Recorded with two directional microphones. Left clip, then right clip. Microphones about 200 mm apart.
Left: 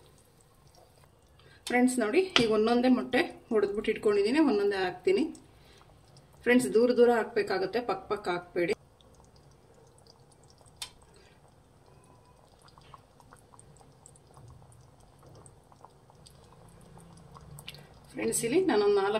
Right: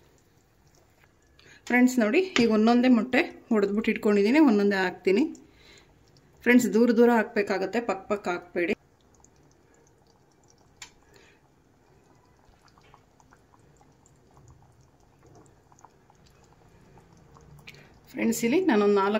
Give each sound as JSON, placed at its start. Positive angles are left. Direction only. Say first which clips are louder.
{"t": 1.7, "sound": "speech", "louder": "right 4 dB", "side_deg": -45}
{"t": 6.4, "sound": "speech", "louder": "right 2 dB", "side_deg": -50}
{"t": 18.1, "sound": "speech", "louder": "right 3 dB", "side_deg": -50}